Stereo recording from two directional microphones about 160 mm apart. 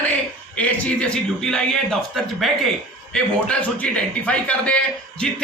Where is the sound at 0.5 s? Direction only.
5° left (ahead or behind).